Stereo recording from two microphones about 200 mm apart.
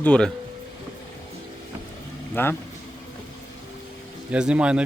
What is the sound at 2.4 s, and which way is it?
Speech, 10° left (ahead or behind).